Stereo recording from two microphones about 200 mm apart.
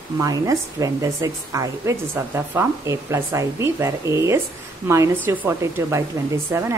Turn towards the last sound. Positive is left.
turn(degrees=-15)  # may be behind; listen again after turning